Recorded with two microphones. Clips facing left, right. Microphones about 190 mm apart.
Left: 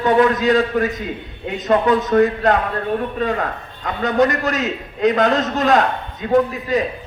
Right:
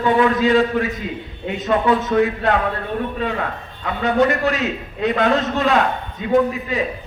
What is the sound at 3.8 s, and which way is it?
A man's voice, 40° left (ahead or behind).